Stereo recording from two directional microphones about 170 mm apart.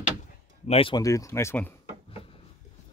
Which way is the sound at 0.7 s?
30° left (ahead or behind).